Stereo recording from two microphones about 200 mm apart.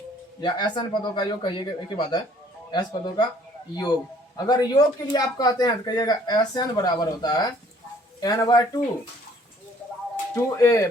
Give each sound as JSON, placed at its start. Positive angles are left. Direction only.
{"t": 0.4, "sound": "speech", "side_deg": 25}
{"t": 4.4, "sound": "speech", "side_deg": 20}
{"t": 10.3, "sound": "speech", "side_deg": 15}